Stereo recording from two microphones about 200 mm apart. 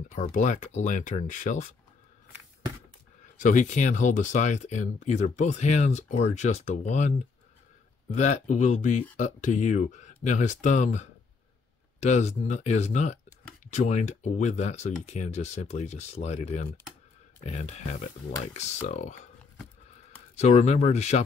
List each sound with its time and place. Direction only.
0.1 s speech: 40° left (ahead or behind)
3.3 s speech: 40° left (ahead or behind)
19.5 s a sound: 10° left (ahead or behind)
20.3 s speech: 35° left (ahead or behind)